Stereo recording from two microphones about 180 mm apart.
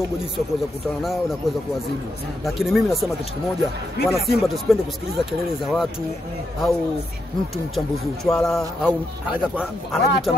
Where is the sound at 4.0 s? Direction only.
65° left (ahead or behind).